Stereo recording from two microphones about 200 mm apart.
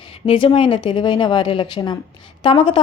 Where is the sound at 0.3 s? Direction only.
25° left (ahead or behind).